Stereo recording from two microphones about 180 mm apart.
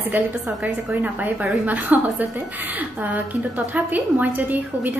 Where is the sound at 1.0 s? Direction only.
10° right (ahead or behind).